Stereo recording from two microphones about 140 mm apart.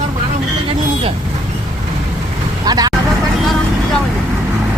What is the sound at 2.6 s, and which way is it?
Vehicle, 30° right (ahead or behind).